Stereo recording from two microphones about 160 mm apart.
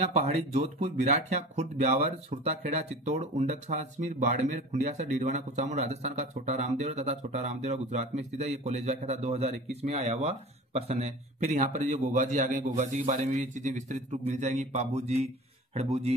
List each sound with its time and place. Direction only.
0.0 s a man's voice: 40° right (ahead or behind)